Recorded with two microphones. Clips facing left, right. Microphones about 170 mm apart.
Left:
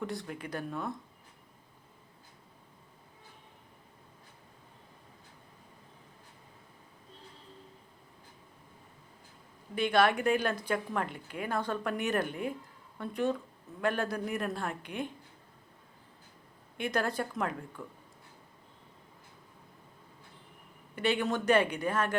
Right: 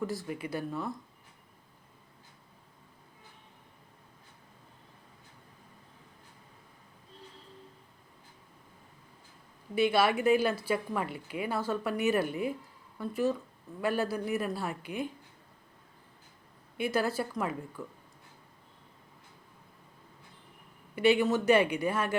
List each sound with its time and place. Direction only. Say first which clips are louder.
0.0 s speech: right 3 dB; centre (ahead or behind)
9.7 s a woman's voice: right 1 dB; 5° right (ahead or behind)
16.7 s speech: right 2 dB; 5° right (ahead or behind)
20.9 s a woman's voice: right 5 dB; 10° right (ahead or behind)